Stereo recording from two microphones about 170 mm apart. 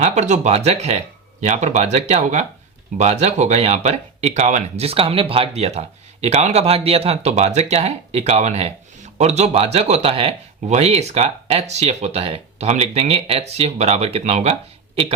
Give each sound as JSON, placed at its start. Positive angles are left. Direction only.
{"t": 0.0, "sound": "speech", "side_deg": -45}